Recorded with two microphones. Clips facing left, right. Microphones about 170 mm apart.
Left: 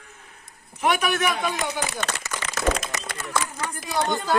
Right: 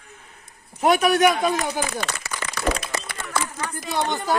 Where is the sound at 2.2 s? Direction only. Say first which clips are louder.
Left 1 dB; 45° left (ahead or behind).